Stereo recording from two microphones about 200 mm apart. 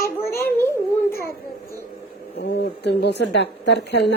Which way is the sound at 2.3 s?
55° left (ahead or behind).